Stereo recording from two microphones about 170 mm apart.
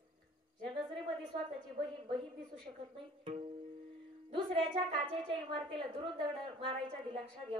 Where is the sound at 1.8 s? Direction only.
30° right (ahead or behind).